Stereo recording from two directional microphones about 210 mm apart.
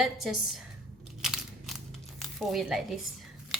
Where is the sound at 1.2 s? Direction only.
Centre (ahead or behind).